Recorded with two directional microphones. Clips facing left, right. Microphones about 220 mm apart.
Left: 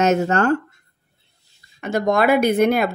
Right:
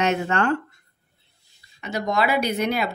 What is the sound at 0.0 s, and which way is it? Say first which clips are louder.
Speech: left 5 dB; 40° left (ahead or behind).